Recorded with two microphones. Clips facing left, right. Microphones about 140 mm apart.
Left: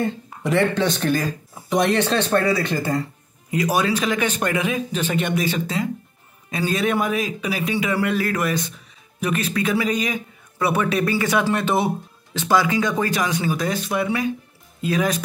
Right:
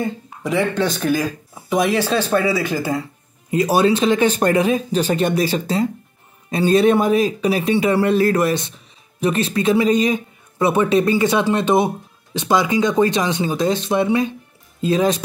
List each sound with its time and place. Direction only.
0.0 s speech: centre (ahead or behind)
3.4 s a man's voice: 30° right (ahead or behind)